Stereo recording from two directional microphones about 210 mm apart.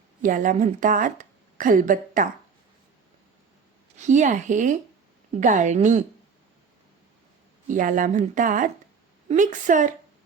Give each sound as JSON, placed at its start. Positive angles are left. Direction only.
{"t": 0.2, "sound": "a woman's voice", "side_deg": -40}
{"t": 3.9, "sound": "speech", "side_deg": -35}
{"t": 7.7, "sound": "speech", "side_deg": -40}